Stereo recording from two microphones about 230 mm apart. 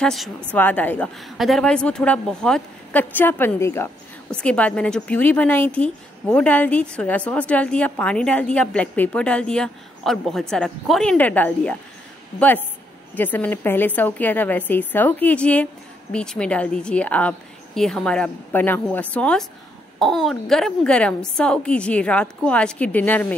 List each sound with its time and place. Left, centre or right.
0.0 s a woman's voice: centre